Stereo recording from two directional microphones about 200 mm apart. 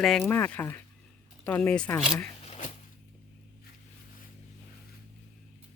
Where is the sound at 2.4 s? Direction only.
35° left (ahead or behind).